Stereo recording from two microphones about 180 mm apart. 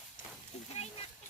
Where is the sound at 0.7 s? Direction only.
35° left (ahead or behind).